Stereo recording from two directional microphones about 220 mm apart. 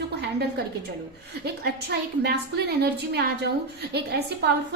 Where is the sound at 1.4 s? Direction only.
45° right (ahead or behind).